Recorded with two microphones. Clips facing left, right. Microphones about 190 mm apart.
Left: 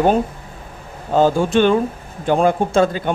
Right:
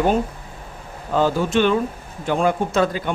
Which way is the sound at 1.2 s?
50° left (ahead or behind).